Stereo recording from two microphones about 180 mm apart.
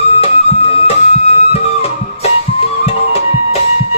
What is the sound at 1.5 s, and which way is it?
Music, 35° left (ahead or behind).